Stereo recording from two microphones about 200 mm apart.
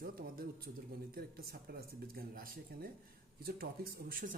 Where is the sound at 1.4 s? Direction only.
50° right (ahead or behind).